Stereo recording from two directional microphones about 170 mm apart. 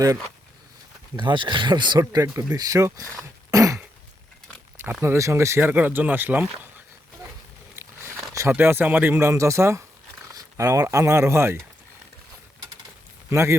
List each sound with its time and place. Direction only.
1.1 s speech: 25° right (ahead or behind)
3.5 s throat clearing: 20° right (ahead or behind)
4.8 s speech: 15° right (ahead or behind)
8.4 s speech: 15° right (ahead or behind)
13.3 s speech: 15° right (ahead or behind)